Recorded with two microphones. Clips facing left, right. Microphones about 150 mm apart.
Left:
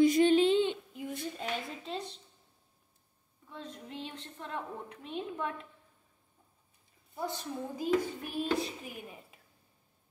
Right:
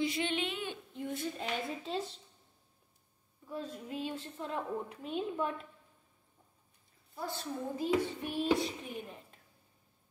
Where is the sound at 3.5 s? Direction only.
10° right (ahead or behind).